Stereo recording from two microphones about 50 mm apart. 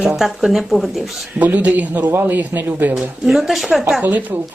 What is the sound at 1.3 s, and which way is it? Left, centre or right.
Speech, right.